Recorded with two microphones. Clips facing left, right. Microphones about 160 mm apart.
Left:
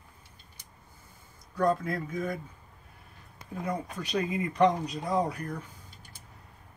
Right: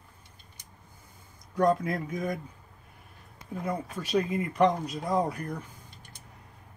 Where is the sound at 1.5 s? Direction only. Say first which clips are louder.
Right 2 dB; 15° right (ahead or behind).